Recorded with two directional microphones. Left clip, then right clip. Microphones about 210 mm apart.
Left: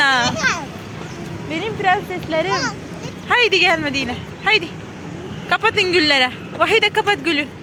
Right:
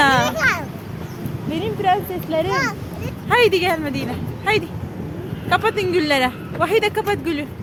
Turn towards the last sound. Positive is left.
turn(degrees=0)  # may be behind; listen again after turning